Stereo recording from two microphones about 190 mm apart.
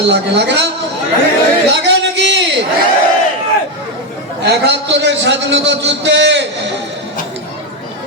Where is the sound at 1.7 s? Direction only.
65° right (ahead or behind).